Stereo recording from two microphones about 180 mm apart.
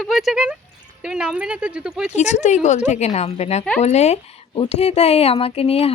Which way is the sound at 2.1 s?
40° left (ahead or behind).